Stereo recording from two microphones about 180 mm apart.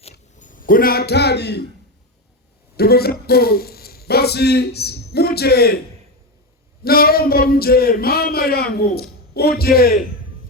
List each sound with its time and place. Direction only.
0.0 s a sound: 45° left (ahead or behind); by 1.7 s 70° left (ahead or behind)
2.7 s speech: 60° left (ahead or behind)
6.8 s a man's voice: 55° left (ahead or behind)